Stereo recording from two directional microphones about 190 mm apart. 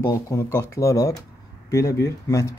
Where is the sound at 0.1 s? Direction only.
15° left (ahead or behind).